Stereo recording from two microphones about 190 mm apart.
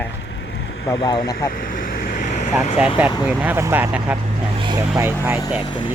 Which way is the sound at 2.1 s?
40° left (ahead or behind).